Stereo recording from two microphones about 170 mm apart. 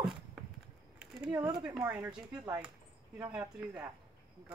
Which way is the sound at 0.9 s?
5° right (ahead or behind).